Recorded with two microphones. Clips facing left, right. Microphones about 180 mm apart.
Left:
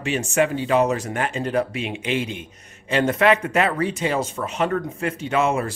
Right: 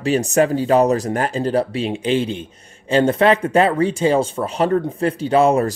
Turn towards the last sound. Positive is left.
turn(degrees=-35)  # may be behind; listen again after turning